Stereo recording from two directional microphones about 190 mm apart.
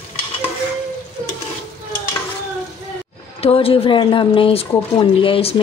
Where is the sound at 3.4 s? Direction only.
30° left (ahead or behind).